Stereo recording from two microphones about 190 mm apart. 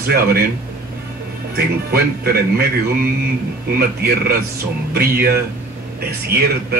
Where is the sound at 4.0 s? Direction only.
55° right (ahead or behind).